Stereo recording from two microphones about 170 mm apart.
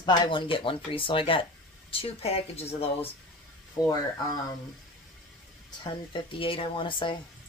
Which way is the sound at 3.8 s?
20° left (ahead or behind).